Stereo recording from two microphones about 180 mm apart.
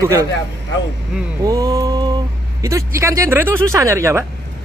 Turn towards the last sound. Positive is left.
turn(degrees=-15)  # may be behind; listen again after turning